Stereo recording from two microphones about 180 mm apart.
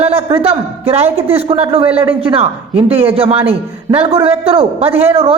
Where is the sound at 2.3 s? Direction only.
35° right (ahead or behind).